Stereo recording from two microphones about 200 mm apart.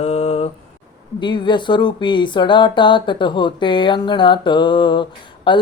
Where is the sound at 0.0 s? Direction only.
30° left (ahead or behind).